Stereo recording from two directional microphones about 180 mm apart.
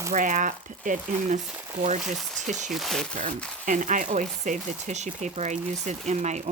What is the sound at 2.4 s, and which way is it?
Speech, 40° right (ahead or behind).